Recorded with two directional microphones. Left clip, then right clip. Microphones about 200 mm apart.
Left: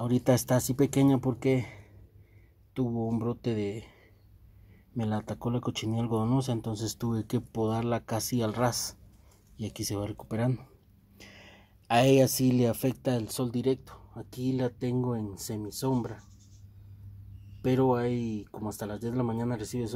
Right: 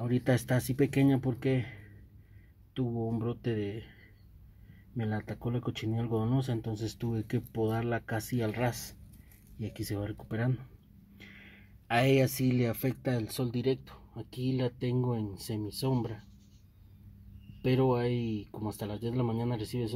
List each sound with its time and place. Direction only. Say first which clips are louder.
0.0 s speech: left 4 dB; 15° left (ahead or behind)
2.8 s speech: left 3 dB; 20° left (ahead or behind)
4.9 s speech: left 4 dB; 15° left (ahead or behind)
18.5 s speech: left 2 dB; 10° left (ahead or behind)